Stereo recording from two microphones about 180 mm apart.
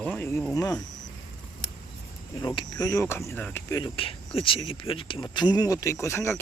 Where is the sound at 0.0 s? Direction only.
10° left (ahead or behind).